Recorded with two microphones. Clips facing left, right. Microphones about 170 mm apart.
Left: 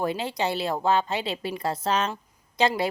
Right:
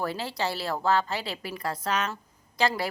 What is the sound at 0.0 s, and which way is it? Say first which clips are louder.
A woman's voice: left 3 dB; 20° left (ahead or behind).